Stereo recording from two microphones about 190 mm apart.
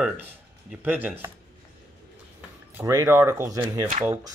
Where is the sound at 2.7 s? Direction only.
15° right (ahead or behind).